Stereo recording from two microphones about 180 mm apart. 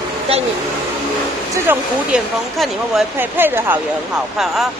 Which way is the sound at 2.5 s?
Centre (ahead or behind).